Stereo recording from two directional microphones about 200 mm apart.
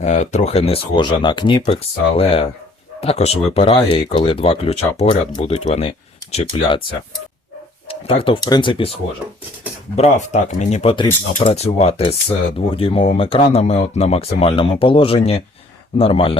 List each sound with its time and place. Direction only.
0.0 s speech: 35° left (ahead or behind)
7.9 s speech: 25° left (ahead or behind)
9.9 s speech: 35° left (ahead or behind)